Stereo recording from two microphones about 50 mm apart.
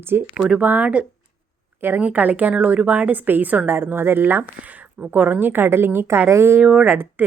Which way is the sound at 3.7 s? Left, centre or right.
Right.